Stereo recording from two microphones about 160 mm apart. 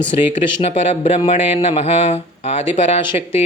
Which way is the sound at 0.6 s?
40° left (ahead or behind).